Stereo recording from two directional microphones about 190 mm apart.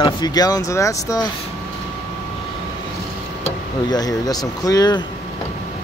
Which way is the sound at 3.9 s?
20° left (ahead or behind).